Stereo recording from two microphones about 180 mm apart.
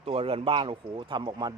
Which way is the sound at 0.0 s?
30° right (ahead or behind).